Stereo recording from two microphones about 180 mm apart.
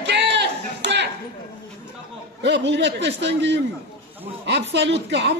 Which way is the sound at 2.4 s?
75° right (ahead or behind).